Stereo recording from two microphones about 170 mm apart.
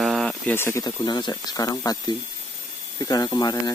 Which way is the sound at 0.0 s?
Centre (ahead or behind).